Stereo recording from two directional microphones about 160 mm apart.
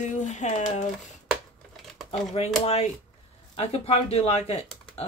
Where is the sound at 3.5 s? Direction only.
40° left (ahead or behind).